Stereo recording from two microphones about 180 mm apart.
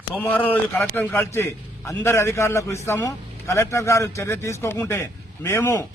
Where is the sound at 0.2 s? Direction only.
10° left (ahead or behind).